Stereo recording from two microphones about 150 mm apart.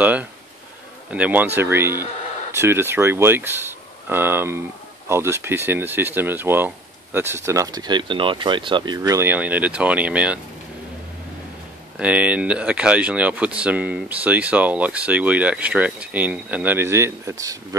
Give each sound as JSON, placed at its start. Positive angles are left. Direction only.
{"t": 0.0, "sound": "speech", "side_deg": -10}
{"t": 9.3, "sound": "speech", "side_deg": -10}
{"t": 12.0, "sound": "speech", "side_deg": -10}